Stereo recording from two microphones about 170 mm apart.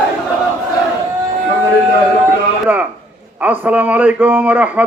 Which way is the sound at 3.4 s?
10° right (ahead or behind).